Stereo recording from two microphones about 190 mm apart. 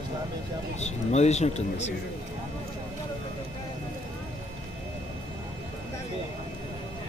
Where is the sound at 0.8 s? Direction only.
35° left (ahead or behind).